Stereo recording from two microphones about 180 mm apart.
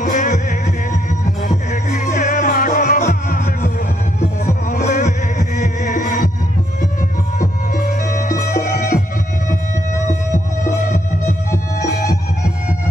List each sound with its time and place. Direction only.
0.0 s music: 45° left (ahead or behind)
8.1 s music: 45° left (ahead or behind)